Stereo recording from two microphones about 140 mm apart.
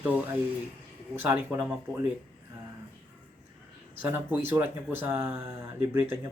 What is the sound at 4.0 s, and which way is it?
Speech, 15° right (ahead or behind).